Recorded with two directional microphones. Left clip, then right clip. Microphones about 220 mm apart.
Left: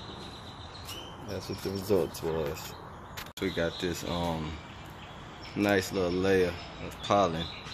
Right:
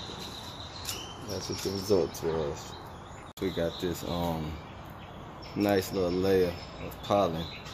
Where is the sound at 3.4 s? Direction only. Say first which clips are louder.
Even; centre (ahead or behind).